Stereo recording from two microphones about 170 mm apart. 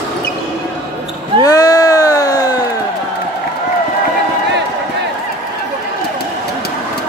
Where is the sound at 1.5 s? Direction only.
20° left (ahead or behind).